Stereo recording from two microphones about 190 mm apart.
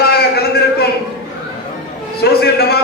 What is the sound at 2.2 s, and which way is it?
Speech, 55° left (ahead or behind).